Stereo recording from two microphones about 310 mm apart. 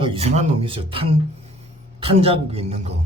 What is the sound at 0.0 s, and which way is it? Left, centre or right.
A man's voice, centre.